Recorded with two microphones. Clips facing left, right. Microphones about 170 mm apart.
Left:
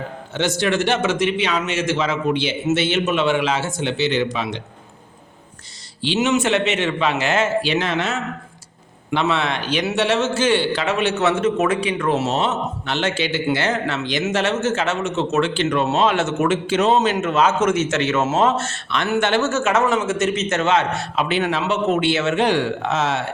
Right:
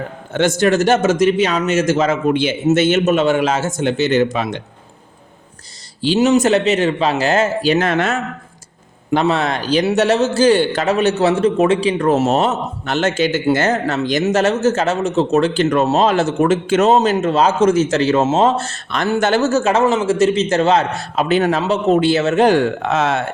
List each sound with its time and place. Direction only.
0.3 s a man's voice: 50° right (ahead or behind)
6.0 s a man's voice: 40° right (ahead or behind)
9.0 s a man's voice: 40° right (ahead or behind)
16.6 s a man's voice: 45° right (ahead or behind)